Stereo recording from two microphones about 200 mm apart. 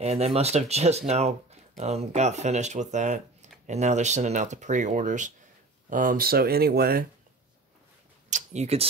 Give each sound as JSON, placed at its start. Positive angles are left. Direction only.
{"t": 0.0, "sound": "speech", "side_deg": -30}
{"t": 8.3, "sound": "speech", "side_deg": -35}